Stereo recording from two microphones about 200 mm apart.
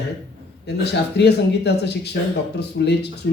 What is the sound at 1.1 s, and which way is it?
Speech, 55° left (ahead or behind).